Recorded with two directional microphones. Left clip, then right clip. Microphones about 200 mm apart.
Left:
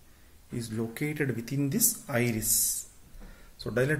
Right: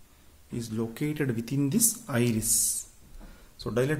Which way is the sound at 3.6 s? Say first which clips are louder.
Even; 10° right (ahead or behind).